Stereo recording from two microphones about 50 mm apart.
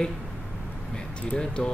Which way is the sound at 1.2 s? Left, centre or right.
Left.